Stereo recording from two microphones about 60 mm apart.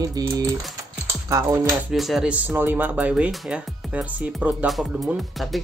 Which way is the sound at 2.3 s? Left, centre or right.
Right.